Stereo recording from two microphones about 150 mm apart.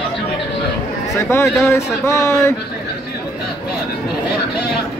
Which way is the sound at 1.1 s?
15° left (ahead or behind).